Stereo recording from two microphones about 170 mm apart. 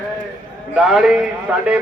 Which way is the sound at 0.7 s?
Centre (ahead or behind).